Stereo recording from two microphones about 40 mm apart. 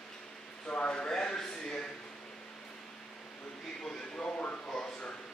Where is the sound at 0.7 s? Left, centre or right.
Left.